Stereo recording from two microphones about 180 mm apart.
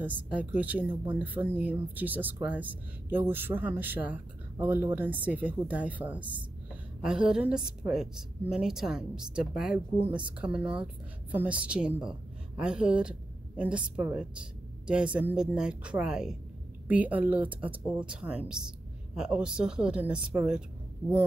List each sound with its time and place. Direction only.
0.0 s speech: 10° right (ahead or behind)
6.1 s a woman's voice: 25° right (ahead or behind)
7.0 s a woman's voice: 5° right (ahead or behind)